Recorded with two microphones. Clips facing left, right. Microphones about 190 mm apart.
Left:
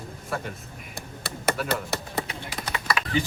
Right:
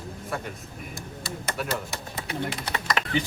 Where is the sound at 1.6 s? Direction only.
65° left (ahead or behind).